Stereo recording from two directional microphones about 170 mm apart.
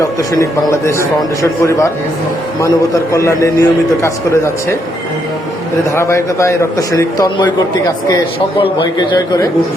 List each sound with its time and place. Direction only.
0.0 s a man's voice: 20° left (ahead or behind)
5.9 s a man's voice: 15° left (ahead or behind)
8.6 s a man's voice: 25° left (ahead or behind)